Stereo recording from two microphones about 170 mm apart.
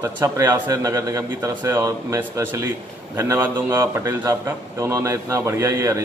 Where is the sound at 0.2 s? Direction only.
20° right (ahead or behind).